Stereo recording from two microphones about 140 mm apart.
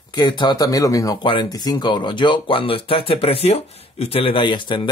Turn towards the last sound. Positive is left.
turn(degrees=35)  # may be behind; listen again after turning